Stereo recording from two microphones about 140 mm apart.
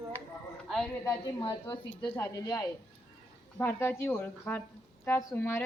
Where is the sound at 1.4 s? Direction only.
30° left (ahead or behind).